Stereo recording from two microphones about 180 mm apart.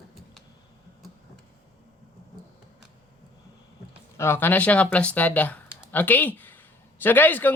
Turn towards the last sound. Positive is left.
turn(degrees=10)  # may be behind; listen again after turning